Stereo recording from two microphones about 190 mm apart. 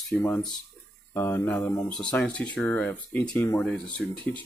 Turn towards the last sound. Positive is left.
turn(degrees=5)  # may be behind; listen again after turning